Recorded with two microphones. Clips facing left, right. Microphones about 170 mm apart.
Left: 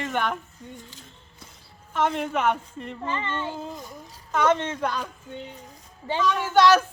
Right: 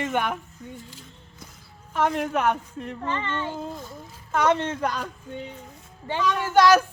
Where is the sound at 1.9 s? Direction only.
5° right (ahead or behind).